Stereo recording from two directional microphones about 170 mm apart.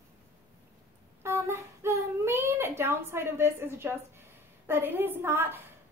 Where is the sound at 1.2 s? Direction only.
15° right (ahead or behind).